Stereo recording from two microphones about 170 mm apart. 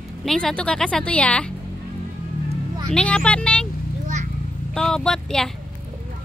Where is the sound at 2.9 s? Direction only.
5° left (ahead or behind).